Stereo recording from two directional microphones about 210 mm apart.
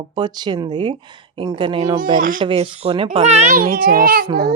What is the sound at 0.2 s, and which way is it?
Speech, 20° right (ahead or behind).